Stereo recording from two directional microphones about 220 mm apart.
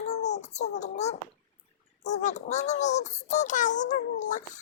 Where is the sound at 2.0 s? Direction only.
30° left (ahead or behind).